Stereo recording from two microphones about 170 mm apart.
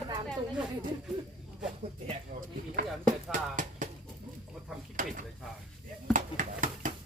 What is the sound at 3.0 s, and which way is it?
Speech, 50° right (ahead or behind).